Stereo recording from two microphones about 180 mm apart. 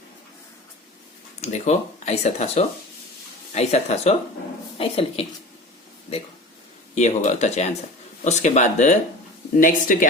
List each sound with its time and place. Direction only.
1.4 s speech: 35° left (ahead or behind)
6.9 s speech: 40° left (ahead or behind)